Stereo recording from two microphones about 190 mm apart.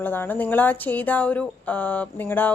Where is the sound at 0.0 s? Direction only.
10° left (ahead or behind).